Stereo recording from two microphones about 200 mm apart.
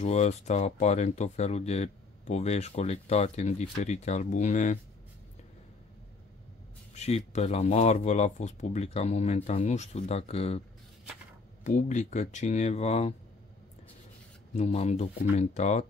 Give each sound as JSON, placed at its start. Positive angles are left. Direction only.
{"t": 0.0, "sound": "speech", "side_deg": 35}
{"t": 7.0, "sound": "speech", "side_deg": 35}
{"t": 11.6, "sound": "speech", "side_deg": 40}
{"t": 14.5, "sound": "speech", "side_deg": 35}